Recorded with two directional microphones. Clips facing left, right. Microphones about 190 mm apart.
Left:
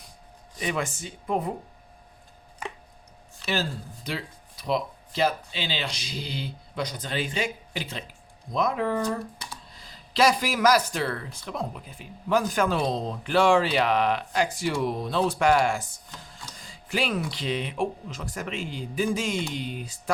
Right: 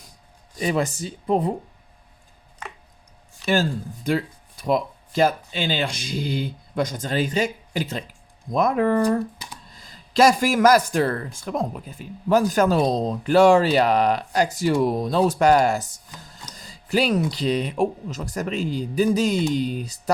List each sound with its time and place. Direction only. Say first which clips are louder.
0.6 s speech: right 6 dB; 35° right (ahead or behind)
3.4 s speech: right 7 dB; 45° right (ahead or behind)
9.0 s speech: right 8 dB; 20° right (ahead or behind)
9.7 s speech: right 6 dB; 45° right (ahead or behind)
16.2 s a sound: right 2 dB; 40° right (ahead or behind)
17.3 s speech: right 6 dB; 40° right (ahead or behind)